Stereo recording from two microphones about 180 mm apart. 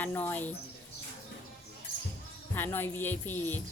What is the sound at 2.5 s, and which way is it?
Speech, 10° left (ahead or behind).